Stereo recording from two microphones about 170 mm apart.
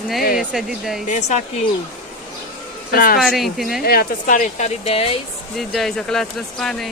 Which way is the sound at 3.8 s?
60° left (ahead or behind).